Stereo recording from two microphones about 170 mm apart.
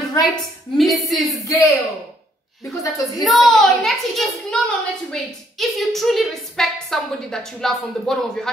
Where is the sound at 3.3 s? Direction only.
Centre (ahead or behind).